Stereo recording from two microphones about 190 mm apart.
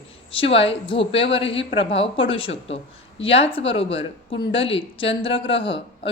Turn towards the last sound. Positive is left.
turn(degrees=30)  # may be behind; listen again after turning